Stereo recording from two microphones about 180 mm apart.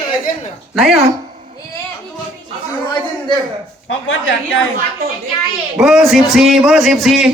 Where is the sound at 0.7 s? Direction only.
Centre (ahead or behind).